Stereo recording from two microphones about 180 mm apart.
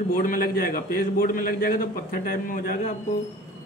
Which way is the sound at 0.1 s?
50° left (ahead or behind).